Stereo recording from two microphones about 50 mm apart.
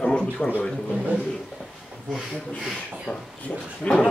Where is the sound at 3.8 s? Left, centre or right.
Left.